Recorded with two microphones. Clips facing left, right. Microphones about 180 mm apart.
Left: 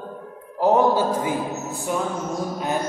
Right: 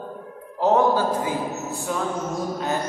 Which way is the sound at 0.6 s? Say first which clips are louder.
Left 1 dB; 15° left (ahead or behind).